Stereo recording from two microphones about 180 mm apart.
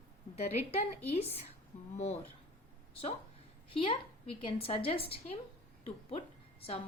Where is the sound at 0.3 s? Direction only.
35° left (ahead or behind).